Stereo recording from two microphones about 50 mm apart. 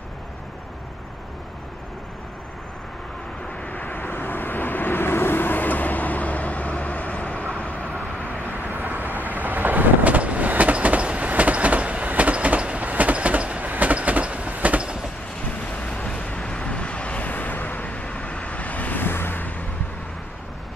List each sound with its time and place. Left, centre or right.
3.6 s vehicle: left
4.0 s vehicle: left
4.8 s vehicle: left
8.5 s vehicle: right
9.2 s train: right
16.1 s vehicle: left
16.3 s vehicle: centre
16.6 s vehicle: left
18.0 s vehicle: centre; by 19.6 s left